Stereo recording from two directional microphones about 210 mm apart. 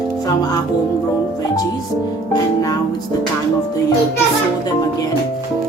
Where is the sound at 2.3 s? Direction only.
15° left (ahead or behind).